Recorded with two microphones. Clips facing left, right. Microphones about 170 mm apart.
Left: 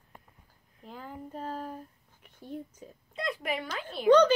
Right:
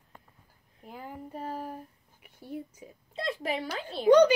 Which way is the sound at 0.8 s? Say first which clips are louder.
Right 1 dB; 10° right (ahead or behind).